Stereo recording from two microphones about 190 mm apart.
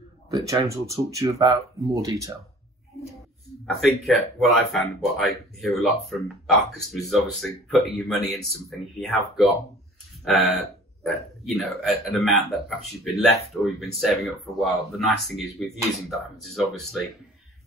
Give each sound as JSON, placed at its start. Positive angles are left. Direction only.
{"t": 0.3, "sound": "speech", "side_deg": -20}
{"t": 4.0, "sound": "speech", "side_deg": 0}